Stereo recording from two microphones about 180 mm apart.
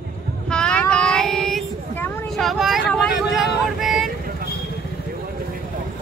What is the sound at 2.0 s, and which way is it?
Vehicle, centre (ahead or behind).